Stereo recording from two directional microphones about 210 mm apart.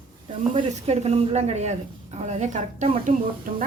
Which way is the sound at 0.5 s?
30° right (ahead or behind).